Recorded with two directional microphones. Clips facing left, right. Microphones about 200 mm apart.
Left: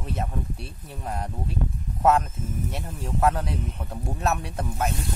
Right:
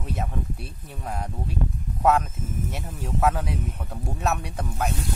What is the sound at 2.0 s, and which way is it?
Speech, centre (ahead or behind).